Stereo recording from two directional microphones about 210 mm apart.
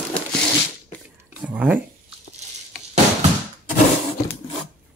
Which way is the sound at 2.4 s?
30° right (ahead or behind).